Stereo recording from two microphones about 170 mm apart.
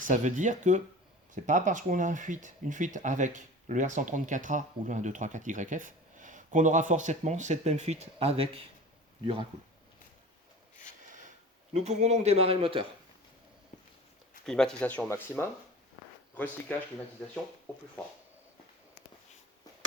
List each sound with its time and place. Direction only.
0.0 s speech: 45° right (ahead or behind); by 9.5 s 30° right (ahead or behind)
11.7 s speech: 40° right (ahead or behind)
14.4 s speech: 5° left (ahead or behind)